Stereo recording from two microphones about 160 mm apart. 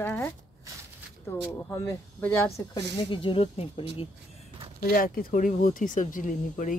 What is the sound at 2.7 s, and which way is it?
Speech, 30° left (ahead or behind).